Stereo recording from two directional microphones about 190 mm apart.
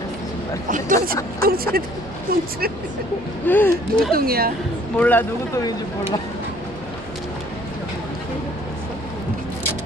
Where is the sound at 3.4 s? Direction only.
10° left (ahead or behind).